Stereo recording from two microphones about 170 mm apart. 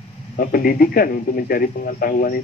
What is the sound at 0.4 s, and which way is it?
Speech, 55° left (ahead or behind).